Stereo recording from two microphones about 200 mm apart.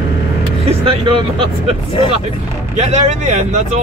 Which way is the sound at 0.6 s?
25° right (ahead or behind).